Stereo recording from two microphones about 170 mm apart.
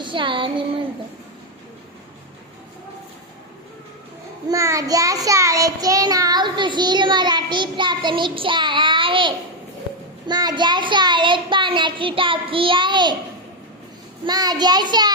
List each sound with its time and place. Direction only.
0.0 s a sound: 30° right (ahead or behind)
4.4 s child singing: 20° right (ahead or behind)
14.3 s child singing: 25° right (ahead or behind)